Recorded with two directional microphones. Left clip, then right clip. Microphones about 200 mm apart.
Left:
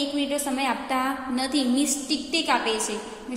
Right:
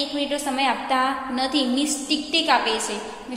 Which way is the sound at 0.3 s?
20° left (ahead or behind).